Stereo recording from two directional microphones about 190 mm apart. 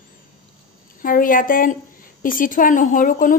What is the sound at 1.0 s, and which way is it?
A woman's voice, 45° left (ahead or behind).